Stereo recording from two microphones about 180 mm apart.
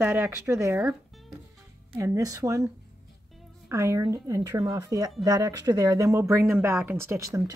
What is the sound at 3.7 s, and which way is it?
Speech, 15° right (ahead or behind).